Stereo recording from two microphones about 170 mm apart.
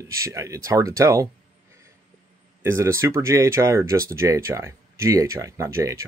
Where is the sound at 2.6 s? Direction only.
15° right (ahead or behind).